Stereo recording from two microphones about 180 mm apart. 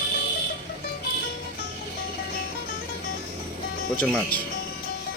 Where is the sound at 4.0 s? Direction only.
10° left (ahead or behind).